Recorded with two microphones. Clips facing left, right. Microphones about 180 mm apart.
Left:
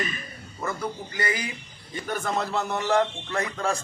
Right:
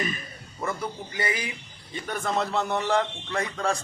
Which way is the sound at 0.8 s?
20° right (ahead or behind).